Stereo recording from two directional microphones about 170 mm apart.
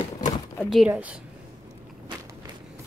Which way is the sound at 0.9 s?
10° right (ahead or behind).